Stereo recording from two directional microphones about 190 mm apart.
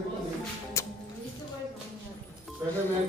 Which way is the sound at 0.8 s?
15° left (ahead or behind).